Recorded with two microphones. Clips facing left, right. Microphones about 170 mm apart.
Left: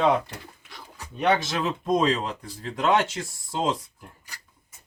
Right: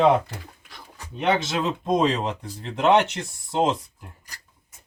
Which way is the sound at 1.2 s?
20° right (ahead or behind).